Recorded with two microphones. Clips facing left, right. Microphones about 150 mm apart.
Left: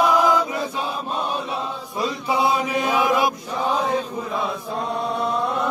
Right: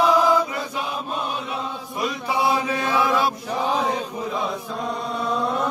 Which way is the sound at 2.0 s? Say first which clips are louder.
Left 1 dB; 25° left (ahead or behind).